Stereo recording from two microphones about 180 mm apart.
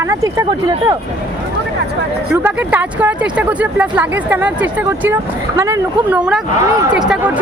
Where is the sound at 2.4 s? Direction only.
10° right (ahead or behind).